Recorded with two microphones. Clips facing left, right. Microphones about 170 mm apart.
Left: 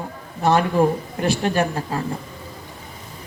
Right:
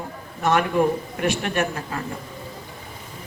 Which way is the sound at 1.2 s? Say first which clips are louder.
Left 3 dB; 30° left (ahead or behind).